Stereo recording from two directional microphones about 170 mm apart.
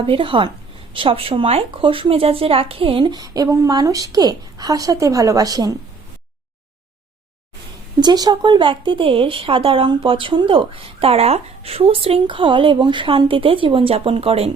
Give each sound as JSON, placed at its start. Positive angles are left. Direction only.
{"t": 0.0, "sound": "speech", "side_deg": -30}
{"t": 7.9, "sound": "speech", "side_deg": -25}